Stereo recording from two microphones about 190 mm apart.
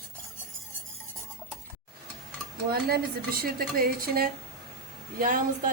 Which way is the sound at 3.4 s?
50° right (ahead or behind).